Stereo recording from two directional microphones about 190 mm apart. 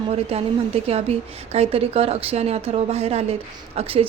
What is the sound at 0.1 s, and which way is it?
A woman's voice, 30° right (ahead or behind).